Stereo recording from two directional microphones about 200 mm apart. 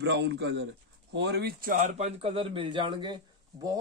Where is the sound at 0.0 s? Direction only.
60° right (ahead or behind).